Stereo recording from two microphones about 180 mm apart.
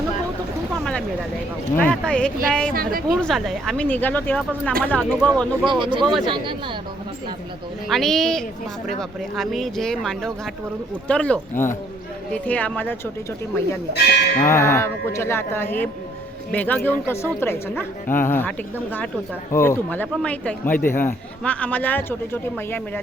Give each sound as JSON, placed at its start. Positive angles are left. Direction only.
{"t": 1.9, "sound": "speech", "side_deg": 5}
{"t": 5.6, "sound": "speech", "side_deg": -25}
{"t": 6.0, "sound": "speech", "side_deg": 0}
{"t": 6.2, "sound": "speech", "side_deg": -25}
{"t": 7.9, "sound": "a man's voice", "side_deg": 0}
{"t": 13.9, "sound": "livestock", "side_deg": 65}
{"t": 14.4, "sound": "a man's voice", "side_deg": 15}